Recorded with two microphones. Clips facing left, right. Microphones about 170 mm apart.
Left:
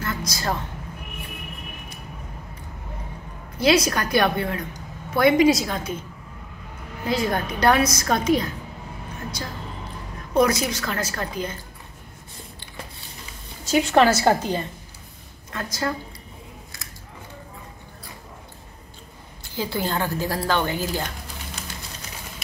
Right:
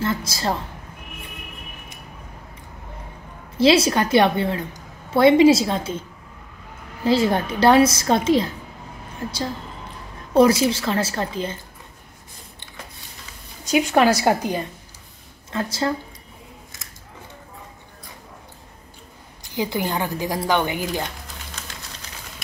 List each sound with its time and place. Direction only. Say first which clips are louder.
0.0 s a sound: right 4 dB; 30° right (ahead or behind)
3.5 s a woman's voice: right 3 dB; 25° right (ahead or behind)
7.1 s a woman's voice: right 5 dB; 30° right (ahead or behind)
10.3 s a woman's voice: right 5 dB; 30° right (ahead or behind)
13.7 s a woman's voice: right 1 dB; 15° right (ahead or behind)
15.5 s a woman's voice: right 4 dB; 25° right (ahead or behind)
19.4 s a woman's voice: right 2 dB; 15° right (ahead or behind)